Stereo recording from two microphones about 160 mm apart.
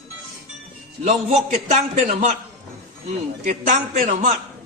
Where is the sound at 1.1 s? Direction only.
45° right (ahead or behind).